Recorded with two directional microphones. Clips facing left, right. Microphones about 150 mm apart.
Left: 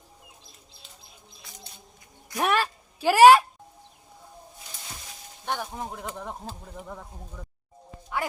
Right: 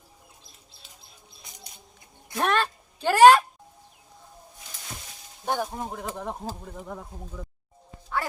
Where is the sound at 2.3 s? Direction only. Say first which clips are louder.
Even; 10° left (ahead or behind).